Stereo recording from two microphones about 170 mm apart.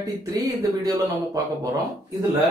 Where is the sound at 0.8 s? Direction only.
20° right (ahead or behind).